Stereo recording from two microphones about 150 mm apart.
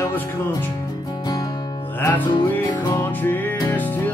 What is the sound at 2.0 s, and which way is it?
Music, 15° left (ahead or behind).